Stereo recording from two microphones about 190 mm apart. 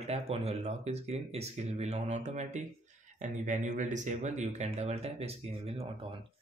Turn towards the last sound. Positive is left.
turn(degrees=-30)  # may be behind; listen again after turning